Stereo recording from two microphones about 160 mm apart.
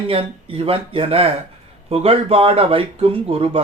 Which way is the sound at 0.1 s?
35° right (ahead or behind).